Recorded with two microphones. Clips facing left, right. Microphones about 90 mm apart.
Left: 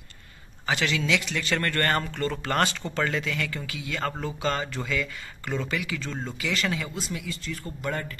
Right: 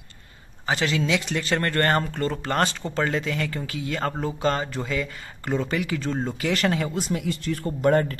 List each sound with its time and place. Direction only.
0.7 s speech: 30° right (ahead or behind); by 8.2 s 45° right (ahead or behind)